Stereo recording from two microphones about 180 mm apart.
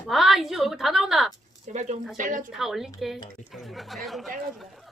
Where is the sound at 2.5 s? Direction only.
Centre (ahead or behind).